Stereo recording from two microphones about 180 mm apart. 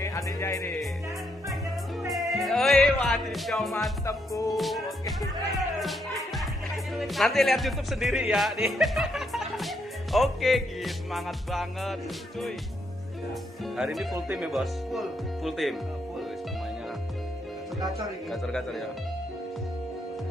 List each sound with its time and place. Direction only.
0.0 s speech: 15° left (ahead or behind)
2.0 s music: centre (ahead or behind)
4.0 s music: 20° left (ahead or behind)
4.5 s a man's voice: centre (ahead or behind)
13.7 s a man's voice: centre (ahead or behind)
18.3 s a man's voice: centre (ahead or behind)